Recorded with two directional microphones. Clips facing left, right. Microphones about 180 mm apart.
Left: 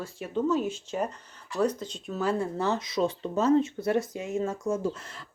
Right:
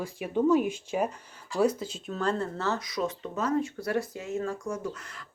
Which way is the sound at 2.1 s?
10° left (ahead or behind).